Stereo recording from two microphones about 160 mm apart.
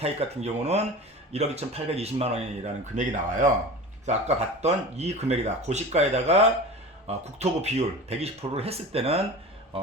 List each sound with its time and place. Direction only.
0.0 s speech: 40° right (ahead or behind)
2.9 s speech: 50° right (ahead or behind)
4.0 s speech: 45° right (ahead or behind)